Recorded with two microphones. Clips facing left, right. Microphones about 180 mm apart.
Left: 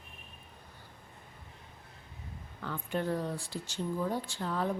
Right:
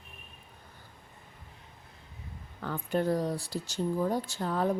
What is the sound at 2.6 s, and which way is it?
A woman's voice, 40° right (ahead or behind).